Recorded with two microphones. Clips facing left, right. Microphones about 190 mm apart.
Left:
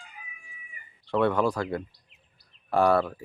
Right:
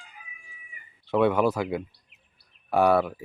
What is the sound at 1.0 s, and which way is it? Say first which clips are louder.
Speech: right 2 dB; 5° right (ahead or behind).